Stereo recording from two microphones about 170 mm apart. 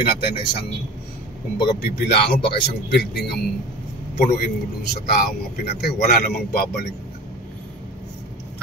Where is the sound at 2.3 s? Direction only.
75° left (ahead or behind).